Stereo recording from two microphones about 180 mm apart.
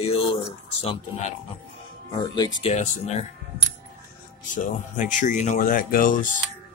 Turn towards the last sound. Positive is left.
turn(degrees=45)  # may be behind; listen again after turning